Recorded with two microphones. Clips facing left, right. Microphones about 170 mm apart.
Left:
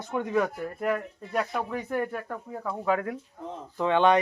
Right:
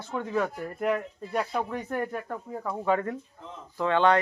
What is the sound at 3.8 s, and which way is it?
Speech, 15° left (ahead or behind).